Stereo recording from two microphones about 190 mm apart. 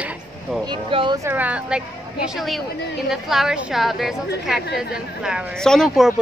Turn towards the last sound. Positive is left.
turn(degrees=0)  # may be behind; listen again after turning